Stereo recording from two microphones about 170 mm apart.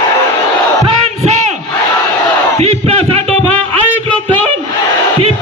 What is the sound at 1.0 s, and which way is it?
Battle cry, 40° right (ahead or behind).